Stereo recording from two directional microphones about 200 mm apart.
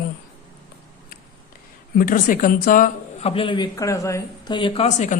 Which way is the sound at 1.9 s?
45° left (ahead or behind).